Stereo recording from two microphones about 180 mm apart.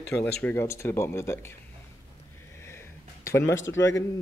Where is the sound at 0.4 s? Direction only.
10° left (ahead or behind).